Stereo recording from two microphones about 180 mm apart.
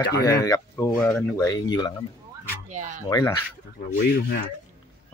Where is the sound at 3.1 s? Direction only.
20° left (ahead or behind).